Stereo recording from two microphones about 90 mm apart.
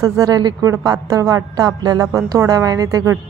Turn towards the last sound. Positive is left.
turn(degrees=-40)  # may be behind; listen again after turning